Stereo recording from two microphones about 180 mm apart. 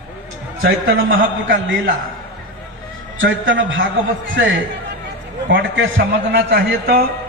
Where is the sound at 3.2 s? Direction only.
90° right.